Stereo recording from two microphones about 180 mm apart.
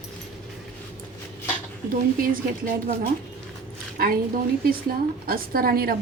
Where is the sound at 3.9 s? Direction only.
55° right (ahead or behind).